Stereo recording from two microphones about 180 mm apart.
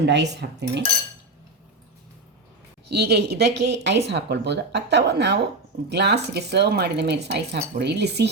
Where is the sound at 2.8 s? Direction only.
65° right (ahead or behind).